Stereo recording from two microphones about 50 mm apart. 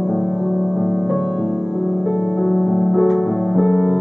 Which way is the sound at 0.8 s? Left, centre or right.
Centre.